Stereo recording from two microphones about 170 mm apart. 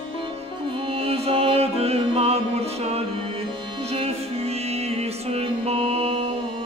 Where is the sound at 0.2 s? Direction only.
30° right (ahead or behind).